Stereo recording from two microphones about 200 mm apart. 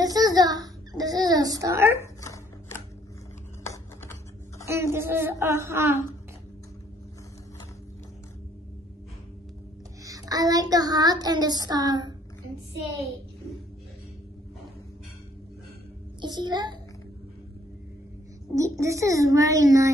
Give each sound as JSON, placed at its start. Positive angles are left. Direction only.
{"t": 0.0, "sound": "a sound", "side_deg": -20}
{"t": 2.0, "sound": "chopping", "side_deg": 15}
{"t": 3.6, "sound": "typing", "side_deg": 15}
{"t": 4.6, "sound": "a child's voice", "side_deg": -15}
{"t": 10.0, "sound": "child singing", "side_deg": -15}
{"t": 16.2, "sound": "a child's voice", "side_deg": -20}
{"t": 18.5, "sound": "a child's voice", "side_deg": -15}